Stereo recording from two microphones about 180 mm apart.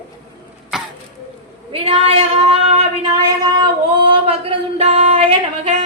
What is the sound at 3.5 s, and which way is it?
Singing, 25° right (ahead or behind).